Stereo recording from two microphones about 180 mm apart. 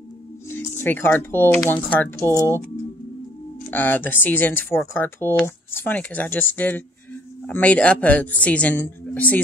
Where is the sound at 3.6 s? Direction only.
10° left (ahead or behind).